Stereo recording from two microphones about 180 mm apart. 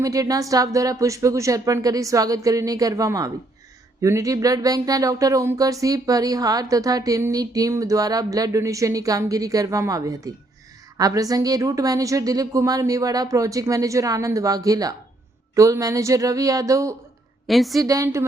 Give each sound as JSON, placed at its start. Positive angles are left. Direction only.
{"t": 0.0, "sound": "speech", "side_deg": -20}
{"t": 17.4, "sound": "a woman's voice", "side_deg": 0}
{"t": 17.7, "sound": "speech", "side_deg": -20}